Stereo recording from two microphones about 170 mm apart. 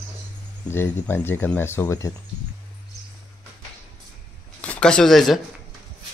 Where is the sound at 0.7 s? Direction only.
10° left (ahead or behind).